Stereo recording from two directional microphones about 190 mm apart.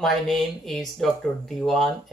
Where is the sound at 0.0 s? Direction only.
Centre (ahead or behind).